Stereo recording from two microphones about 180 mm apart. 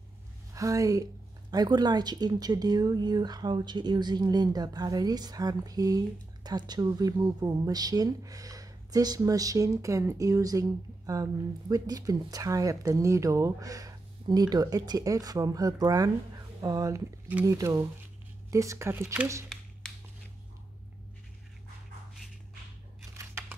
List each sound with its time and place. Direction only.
0.6 s a woman's voice: 20° right (ahead or behind)